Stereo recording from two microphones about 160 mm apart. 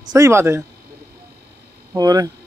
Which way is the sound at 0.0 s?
20° right (ahead or behind).